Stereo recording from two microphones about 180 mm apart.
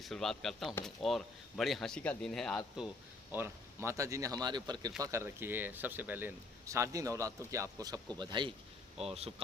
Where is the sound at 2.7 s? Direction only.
5° right (ahead or behind).